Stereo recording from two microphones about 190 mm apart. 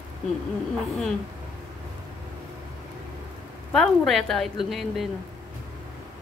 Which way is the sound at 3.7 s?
Centre (ahead or behind).